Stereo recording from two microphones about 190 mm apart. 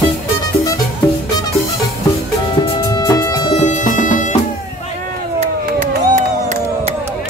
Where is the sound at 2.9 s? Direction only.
15° left (ahead or behind).